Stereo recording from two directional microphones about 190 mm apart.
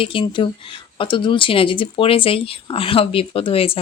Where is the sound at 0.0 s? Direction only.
25° left (ahead or behind).